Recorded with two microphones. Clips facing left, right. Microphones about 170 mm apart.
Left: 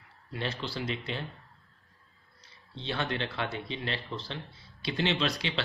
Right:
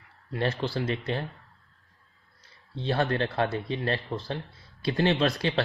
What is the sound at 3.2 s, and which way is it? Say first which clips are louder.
Speech: right 7 dB; 45° right (ahead or behind).